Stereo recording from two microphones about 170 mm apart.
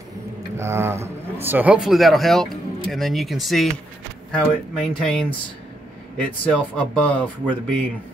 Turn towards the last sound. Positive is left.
turn(degrees=5)  # may be behind; listen again after turning